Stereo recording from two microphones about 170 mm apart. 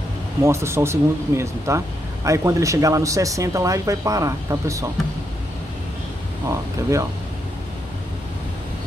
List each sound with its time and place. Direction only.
0.4 s speech: 15° right (ahead or behind)
6.5 s speech: 20° right (ahead or behind)